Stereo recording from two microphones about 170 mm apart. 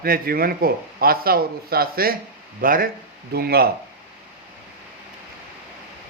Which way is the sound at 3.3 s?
65° right (ahead or behind).